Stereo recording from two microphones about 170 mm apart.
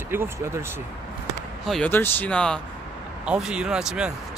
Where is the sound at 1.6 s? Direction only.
Centre (ahead or behind).